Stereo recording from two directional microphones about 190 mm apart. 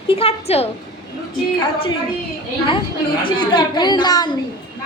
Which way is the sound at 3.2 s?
25° left (ahead or behind).